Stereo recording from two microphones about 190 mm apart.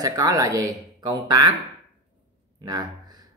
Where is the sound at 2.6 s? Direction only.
20° right (ahead or behind).